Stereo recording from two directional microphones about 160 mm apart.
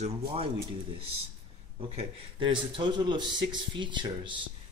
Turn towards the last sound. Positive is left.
turn(degrees=-30)  # may be behind; listen again after turning